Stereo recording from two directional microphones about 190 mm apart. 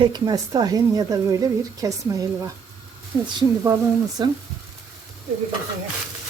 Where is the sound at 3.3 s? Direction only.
15° right (ahead or behind).